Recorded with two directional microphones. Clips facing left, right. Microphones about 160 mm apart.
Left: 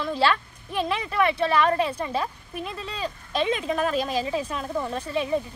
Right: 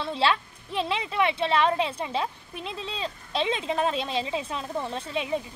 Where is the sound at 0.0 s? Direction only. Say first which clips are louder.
Left 3 dB; 25° right (ahead or behind).